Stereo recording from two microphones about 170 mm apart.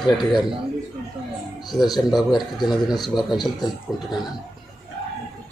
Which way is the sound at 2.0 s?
Centre (ahead or behind).